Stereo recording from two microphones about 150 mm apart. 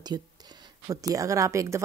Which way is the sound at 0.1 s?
25° right (ahead or behind).